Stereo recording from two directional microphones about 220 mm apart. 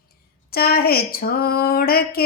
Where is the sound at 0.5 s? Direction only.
45° left (ahead or behind).